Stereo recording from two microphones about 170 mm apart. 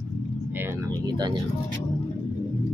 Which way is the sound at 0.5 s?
15° right (ahead or behind).